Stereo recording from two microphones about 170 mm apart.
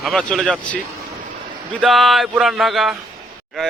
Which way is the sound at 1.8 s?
Centre (ahead or behind).